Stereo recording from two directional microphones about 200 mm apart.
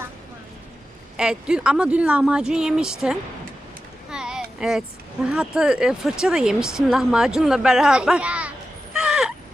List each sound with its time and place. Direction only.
1.1 s speech: 5° right (ahead or behind)
4.1 s a sound: 5° right (ahead or behind)
5.2 s speech: 5° right (ahead or behind)